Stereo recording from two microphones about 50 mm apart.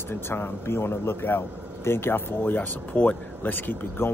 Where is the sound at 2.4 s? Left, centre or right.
Left.